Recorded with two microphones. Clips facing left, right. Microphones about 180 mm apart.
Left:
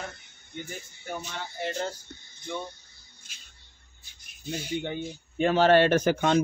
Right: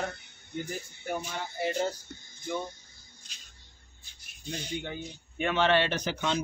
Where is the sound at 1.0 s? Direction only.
10° right (ahead or behind).